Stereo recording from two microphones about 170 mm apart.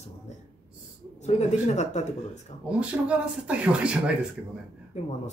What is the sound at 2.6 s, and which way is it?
Speech, 5° right (ahead or behind).